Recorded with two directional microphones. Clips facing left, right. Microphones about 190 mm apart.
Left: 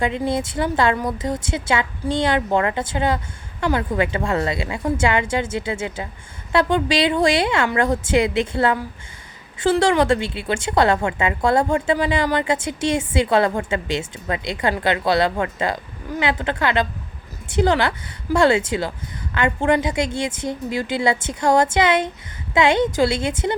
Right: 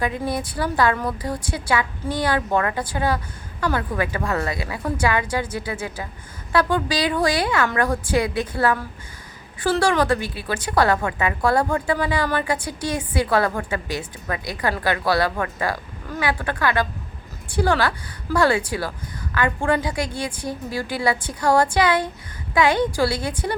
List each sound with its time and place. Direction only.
0.0 s a woman's voice: 25° left (ahead or behind)